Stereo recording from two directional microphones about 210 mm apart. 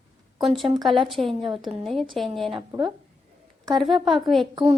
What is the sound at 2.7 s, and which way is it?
Speech, 25° right (ahead or behind).